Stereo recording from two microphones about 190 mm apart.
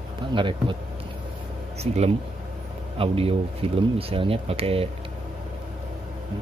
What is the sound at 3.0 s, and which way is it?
Speech, 30° right (ahead or behind).